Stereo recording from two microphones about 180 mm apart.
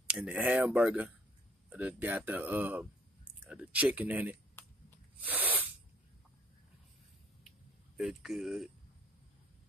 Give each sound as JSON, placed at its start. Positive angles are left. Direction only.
{"t": 0.1, "sound": "speech", "side_deg": -5}
{"t": 4.6, "sound": "a sound", "side_deg": 10}
{"t": 5.2, "sound": "sneeze", "side_deg": -10}
{"t": 8.0, "sound": "speech", "side_deg": 0}